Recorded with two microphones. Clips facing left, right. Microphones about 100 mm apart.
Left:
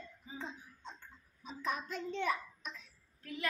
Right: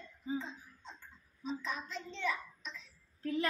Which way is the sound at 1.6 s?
50° left (ahead or behind).